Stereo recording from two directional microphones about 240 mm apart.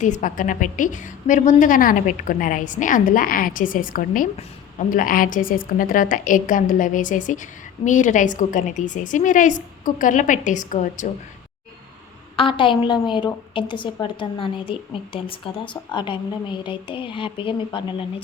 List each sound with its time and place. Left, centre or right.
0.0 s a woman's voice: left
12.4 s a woman's voice: left